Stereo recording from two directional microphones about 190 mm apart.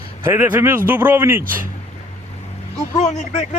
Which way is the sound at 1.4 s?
50° right (ahead or behind).